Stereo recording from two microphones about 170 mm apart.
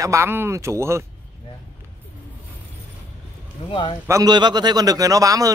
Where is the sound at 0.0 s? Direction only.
15° right (ahead or behind).